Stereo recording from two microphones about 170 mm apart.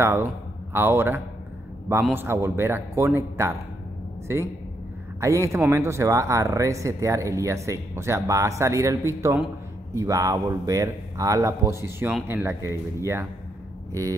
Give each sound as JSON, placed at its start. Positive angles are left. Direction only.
{"t": 0.0, "sound": "speech", "side_deg": -15}